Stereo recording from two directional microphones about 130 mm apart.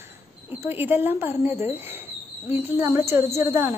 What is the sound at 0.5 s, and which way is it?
A woman's voice, 15° right (ahead or behind).